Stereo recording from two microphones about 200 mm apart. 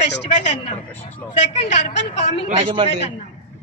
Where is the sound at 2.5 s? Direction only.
25° right (ahead or behind).